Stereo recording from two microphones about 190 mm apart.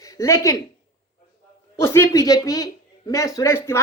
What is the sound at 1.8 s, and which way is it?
A woman's voice, 15° left (ahead or behind).